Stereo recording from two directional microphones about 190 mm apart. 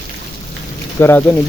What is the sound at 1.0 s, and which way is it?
Speech, 10° left (ahead or behind).